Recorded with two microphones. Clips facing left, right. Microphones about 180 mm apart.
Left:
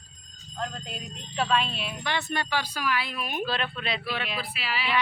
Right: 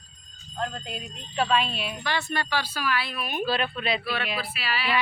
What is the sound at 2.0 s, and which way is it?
Speech, 20° left (ahead or behind).